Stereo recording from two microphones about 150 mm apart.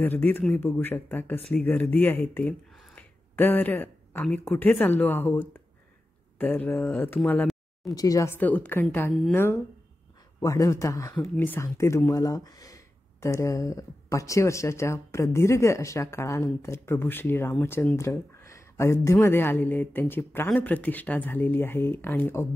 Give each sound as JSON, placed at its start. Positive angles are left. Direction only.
{"t": 0.0, "sound": "speech", "side_deg": 10}
{"t": 7.9, "sound": "a man's voice", "side_deg": 25}